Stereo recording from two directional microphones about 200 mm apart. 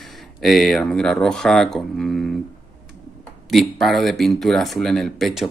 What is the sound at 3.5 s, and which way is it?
Speech, centre (ahead or behind).